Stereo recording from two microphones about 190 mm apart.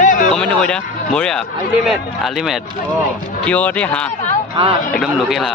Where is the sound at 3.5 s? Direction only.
5° left (ahead or behind).